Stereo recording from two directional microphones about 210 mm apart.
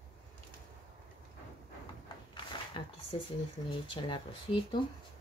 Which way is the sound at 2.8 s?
25° left (ahead or behind).